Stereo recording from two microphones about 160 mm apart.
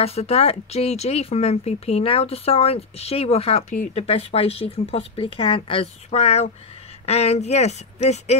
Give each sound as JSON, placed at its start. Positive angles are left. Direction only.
{"t": 0.0, "sound": "speech", "side_deg": 40}